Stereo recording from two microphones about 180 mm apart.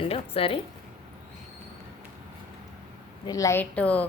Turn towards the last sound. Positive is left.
turn(degrees=10)  # may be behind; listen again after turning